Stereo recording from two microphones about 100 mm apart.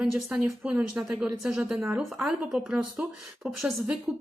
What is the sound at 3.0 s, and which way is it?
Speech, 15° right (ahead or behind).